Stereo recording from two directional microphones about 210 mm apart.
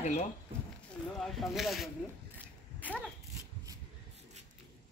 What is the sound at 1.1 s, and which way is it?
Speech, centre (ahead or behind).